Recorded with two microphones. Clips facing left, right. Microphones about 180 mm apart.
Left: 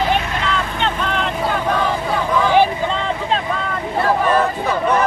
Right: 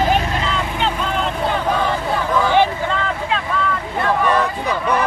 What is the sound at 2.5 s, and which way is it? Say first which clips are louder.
Vehicle: left 3 dB; 15° left (ahead or behind).